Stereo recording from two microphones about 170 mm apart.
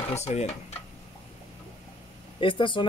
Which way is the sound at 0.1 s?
40° left (ahead or behind).